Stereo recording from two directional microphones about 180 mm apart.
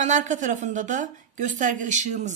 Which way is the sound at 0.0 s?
45° right (ahead or behind).